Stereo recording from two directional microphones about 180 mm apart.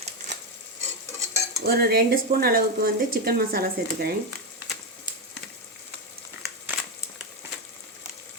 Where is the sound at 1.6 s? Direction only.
60° right (ahead or behind).